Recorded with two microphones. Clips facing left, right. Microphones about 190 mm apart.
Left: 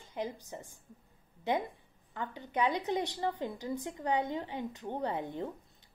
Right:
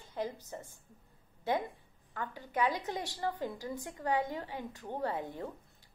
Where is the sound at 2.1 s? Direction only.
20° left (ahead or behind).